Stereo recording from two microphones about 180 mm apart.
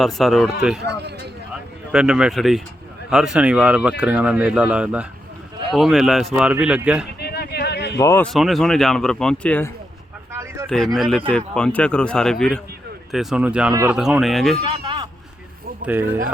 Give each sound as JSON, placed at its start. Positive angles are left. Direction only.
{"t": 0.0, "sound": "speech", "side_deg": 0}
{"t": 1.9, "sound": "speech", "side_deg": -5}
{"t": 7.2, "sound": "a sound", "side_deg": 65}
{"t": 7.9, "sound": "a man's voice", "side_deg": 15}
{"t": 8.3, "sound": "speech", "side_deg": 0}
{"t": 10.7, "sound": "speech", "side_deg": 0}
{"t": 14.6, "sound": "a sound", "side_deg": -30}
{"t": 15.9, "sound": "speech", "side_deg": -10}